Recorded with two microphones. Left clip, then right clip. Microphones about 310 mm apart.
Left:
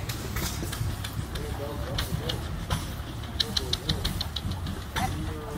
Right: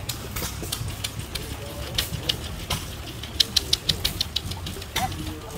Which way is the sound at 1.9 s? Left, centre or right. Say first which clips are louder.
Right 9 dB; right.